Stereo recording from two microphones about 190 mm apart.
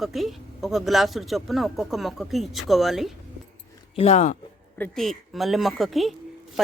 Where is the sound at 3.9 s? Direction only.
35° left (ahead or behind).